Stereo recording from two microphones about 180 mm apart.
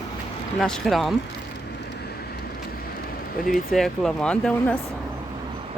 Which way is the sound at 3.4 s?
Centre (ahead or behind).